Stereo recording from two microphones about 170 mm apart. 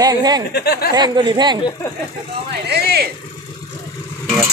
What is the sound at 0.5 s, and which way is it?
Speech, 70° left (ahead or behind).